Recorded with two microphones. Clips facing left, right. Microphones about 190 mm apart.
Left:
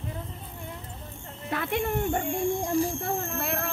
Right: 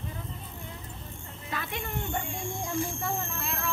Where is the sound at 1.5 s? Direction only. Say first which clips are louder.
Left 8 dB; 55° left (ahead or behind).